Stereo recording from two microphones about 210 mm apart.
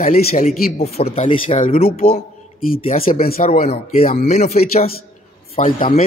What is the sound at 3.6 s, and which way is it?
Speech, 30° left (ahead or behind).